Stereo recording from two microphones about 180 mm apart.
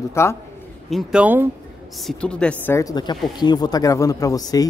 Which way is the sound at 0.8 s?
5° right (ahead or behind).